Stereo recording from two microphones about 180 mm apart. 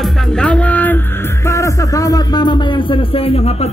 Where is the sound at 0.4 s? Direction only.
5° left (ahead or behind).